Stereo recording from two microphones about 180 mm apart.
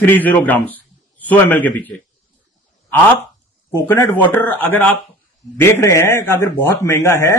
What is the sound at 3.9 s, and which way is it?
Speech, 10° left (ahead or behind).